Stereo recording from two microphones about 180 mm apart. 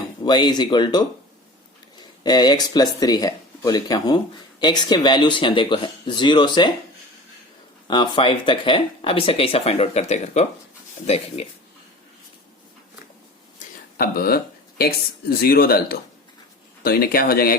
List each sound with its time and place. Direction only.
0.3 s speech: 25° left (ahead or behind)
7.9 s speech: 25° left (ahead or behind)
13.6 s speech: 55° left (ahead or behind)